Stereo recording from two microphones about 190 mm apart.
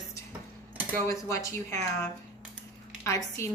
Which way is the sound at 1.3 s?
15° left (ahead or behind).